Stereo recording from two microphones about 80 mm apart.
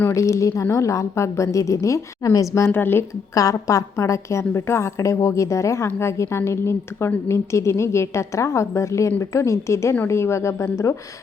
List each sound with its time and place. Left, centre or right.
0.1 s a woman's voice: left
2.7 s a woman's voice: left
3.3 s a woman's voice: left